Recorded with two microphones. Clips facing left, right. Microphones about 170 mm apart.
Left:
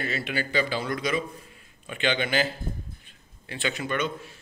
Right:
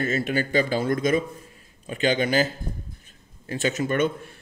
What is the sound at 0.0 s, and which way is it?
A man's voice, 45° right (ahead or behind).